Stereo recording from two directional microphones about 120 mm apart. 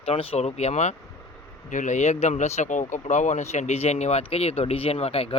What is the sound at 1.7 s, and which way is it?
Speech, 90° left.